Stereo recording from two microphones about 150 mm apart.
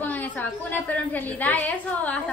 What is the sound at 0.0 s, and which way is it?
A woman's voice, 10° left (ahead or behind).